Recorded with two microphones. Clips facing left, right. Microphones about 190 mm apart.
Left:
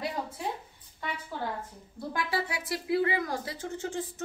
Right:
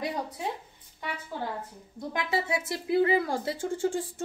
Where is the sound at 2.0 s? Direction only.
20° right (ahead or behind).